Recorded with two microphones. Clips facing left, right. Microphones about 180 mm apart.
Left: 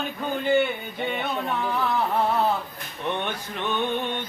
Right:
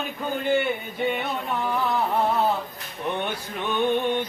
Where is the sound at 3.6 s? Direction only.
10° right (ahead or behind).